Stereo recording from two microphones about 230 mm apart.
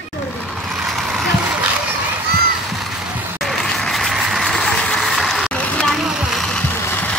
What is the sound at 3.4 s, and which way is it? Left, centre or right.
Vehicle, centre.